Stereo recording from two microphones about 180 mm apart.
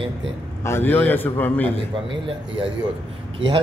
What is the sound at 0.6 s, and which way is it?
A man's voice, 15° left (ahead or behind).